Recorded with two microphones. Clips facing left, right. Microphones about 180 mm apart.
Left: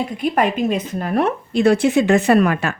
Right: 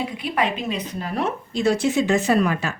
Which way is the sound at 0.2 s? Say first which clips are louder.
Left 8 dB; 45° left (ahead or behind).